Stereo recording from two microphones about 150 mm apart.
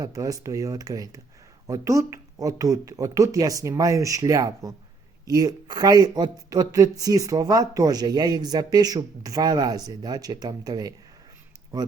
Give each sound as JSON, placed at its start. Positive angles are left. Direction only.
{"t": 0.0, "sound": "speech", "side_deg": -25}